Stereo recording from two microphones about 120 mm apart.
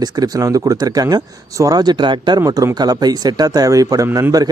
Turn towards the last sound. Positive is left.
turn(degrees=-30)  # may be behind; listen again after turning